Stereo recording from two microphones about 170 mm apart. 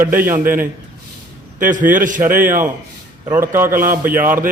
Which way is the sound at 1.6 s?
50° right (ahead or behind).